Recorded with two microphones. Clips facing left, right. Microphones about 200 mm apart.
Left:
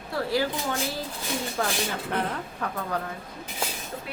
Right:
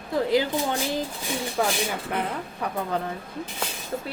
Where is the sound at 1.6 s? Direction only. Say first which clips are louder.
Right 5 dB; 10° right (ahead or behind).